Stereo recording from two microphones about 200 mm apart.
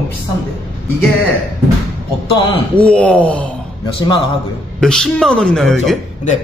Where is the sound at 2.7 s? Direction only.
5° left (ahead or behind).